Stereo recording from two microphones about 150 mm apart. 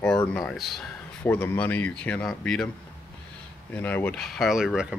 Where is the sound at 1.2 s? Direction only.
10° left (ahead or behind).